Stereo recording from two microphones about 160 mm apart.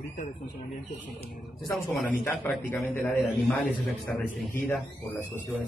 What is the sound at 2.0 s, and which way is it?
A man's voice, 10° left (ahead or behind).